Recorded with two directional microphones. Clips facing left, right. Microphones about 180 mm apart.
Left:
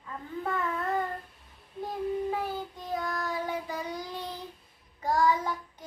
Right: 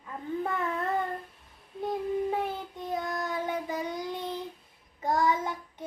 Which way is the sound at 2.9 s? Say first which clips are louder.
Even; 20° right (ahead or behind).